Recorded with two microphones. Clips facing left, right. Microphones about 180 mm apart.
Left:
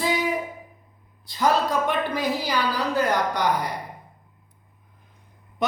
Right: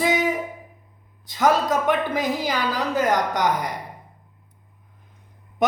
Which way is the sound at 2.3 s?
45° right (ahead or behind).